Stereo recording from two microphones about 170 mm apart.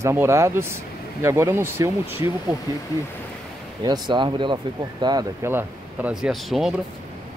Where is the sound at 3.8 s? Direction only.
25° right (ahead or behind).